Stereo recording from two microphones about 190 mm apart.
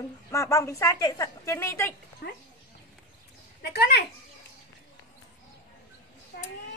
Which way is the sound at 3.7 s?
60° left (ahead or behind).